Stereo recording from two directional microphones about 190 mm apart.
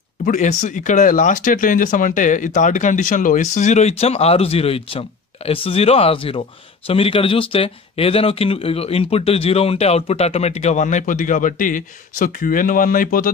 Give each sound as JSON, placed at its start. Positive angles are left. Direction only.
{"t": 0.2, "sound": "speech", "side_deg": 40}